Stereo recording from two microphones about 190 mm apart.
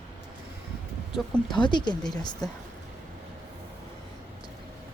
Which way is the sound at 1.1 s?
Centre (ahead or behind).